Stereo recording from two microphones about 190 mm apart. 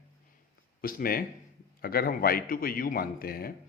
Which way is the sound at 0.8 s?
50° left (ahead or behind).